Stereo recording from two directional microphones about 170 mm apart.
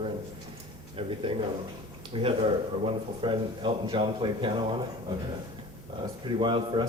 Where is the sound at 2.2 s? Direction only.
35° right (ahead or behind).